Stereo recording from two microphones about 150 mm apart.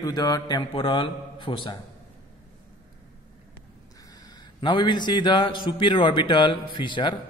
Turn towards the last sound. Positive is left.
turn(degrees=30)  # may be behind; listen again after turning